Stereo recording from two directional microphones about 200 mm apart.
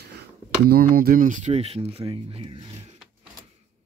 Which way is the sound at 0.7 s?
45° right (ahead or behind).